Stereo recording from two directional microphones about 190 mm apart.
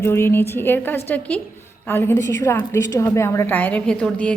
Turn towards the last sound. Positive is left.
turn(degrees=5)  # may be behind; listen again after turning